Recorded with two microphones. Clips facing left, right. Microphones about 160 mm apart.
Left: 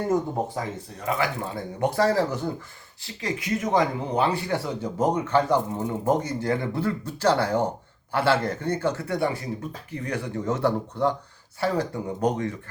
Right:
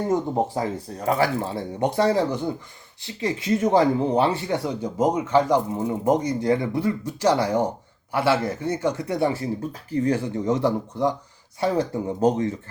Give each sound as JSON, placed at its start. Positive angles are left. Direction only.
{"t": 0.1, "sound": "speech", "side_deg": -30}
{"t": 10.4, "sound": "speech", "side_deg": -15}